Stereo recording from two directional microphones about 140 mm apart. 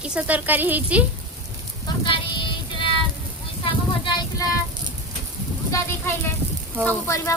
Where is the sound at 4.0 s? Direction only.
25° left (ahead or behind).